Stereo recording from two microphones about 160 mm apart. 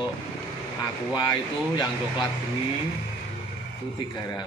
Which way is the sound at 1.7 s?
30° left (ahead or behind).